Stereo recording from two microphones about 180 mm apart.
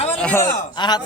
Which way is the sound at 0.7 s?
25° left (ahead or behind).